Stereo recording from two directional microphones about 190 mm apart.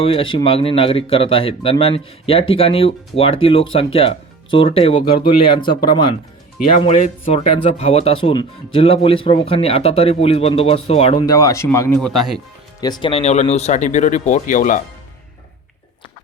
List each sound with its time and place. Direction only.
0.0 s speech: 30° left (ahead or behind)
6.7 s speech: 35° left (ahead or behind)
11.3 s speech: 20° left (ahead or behind)
11.9 s speech: centre (ahead or behind)
12.8 s speech: 25° left (ahead or behind); by 14.8 s 40° left (ahead or behind)